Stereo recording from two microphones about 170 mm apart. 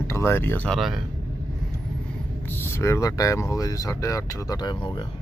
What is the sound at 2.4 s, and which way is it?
Speech, 15° left (ahead or behind).